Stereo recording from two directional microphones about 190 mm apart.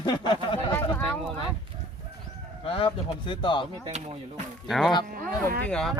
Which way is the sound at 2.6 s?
30° left (ahead or behind).